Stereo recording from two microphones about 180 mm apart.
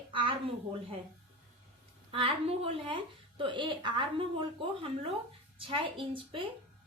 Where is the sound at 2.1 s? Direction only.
30° right (ahead or behind).